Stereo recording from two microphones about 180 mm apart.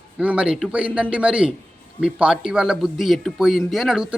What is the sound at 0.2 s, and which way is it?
Speech, 5° right (ahead or behind).